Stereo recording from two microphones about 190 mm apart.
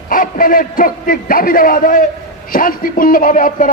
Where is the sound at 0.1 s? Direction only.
45° left (ahead or behind).